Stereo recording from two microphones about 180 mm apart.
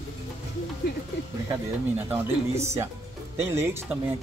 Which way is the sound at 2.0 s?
15° right (ahead or behind).